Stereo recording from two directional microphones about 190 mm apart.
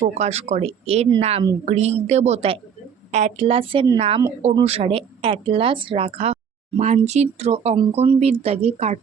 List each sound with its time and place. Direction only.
0.1 s a woman's voice: 35° right (ahead or behind)